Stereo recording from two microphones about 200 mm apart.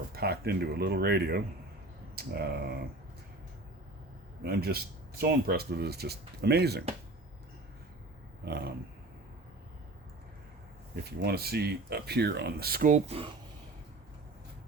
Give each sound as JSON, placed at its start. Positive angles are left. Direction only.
{"t": 0.1, "sound": "speech", "side_deg": -50}
{"t": 4.4, "sound": "speech", "side_deg": -50}
{"t": 8.4, "sound": "speech", "side_deg": -55}
{"t": 11.2, "sound": "speech", "side_deg": -50}